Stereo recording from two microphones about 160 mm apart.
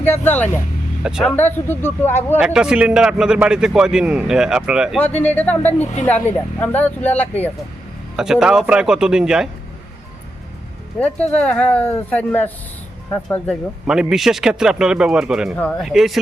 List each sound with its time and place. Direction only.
0.0 s speech: 10° left (ahead or behind)
2.4 s a man's voice: 5° right (ahead or behind)
5.1 s speech: 10° left (ahead or behind)
5.8 s a woman's voice: 45° left (ahead or behind)
6.1 s speech: 10° left (ahead or behind)
8.1 s a man's voice: 5° right (ahead or behind)
11.0 s a man's voice: 10° left (ahead or behind)